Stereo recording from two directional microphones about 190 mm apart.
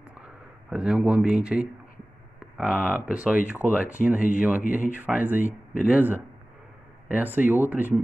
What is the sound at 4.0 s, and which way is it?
Speech, 45° left (ahead or behind).